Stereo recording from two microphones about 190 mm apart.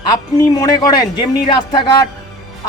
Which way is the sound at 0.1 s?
20° left (ahead or behind).